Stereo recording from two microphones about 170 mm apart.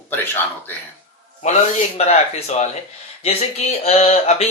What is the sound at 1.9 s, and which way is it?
Speech, 40° left (ahead or behind).